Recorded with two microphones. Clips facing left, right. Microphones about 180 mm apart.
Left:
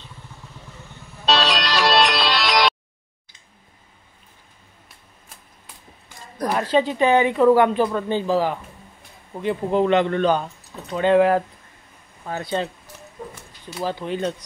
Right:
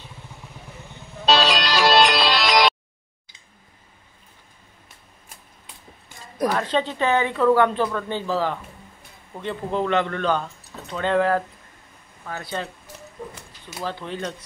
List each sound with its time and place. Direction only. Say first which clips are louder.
1.2 s music: right 1 dB; centre (ahead or behind)
6.4 s a woman's voice: left 2 dB; 10° left (ahead or behind)
13.8 s a woman's voice: left 5 dB; 15° left (ahead or behind)